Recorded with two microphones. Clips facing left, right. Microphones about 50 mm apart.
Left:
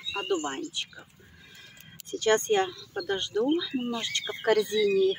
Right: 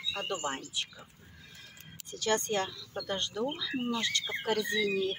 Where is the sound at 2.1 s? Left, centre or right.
Left.